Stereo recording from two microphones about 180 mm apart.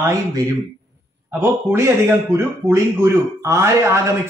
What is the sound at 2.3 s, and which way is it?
Speech, 15° right (ahead or behind).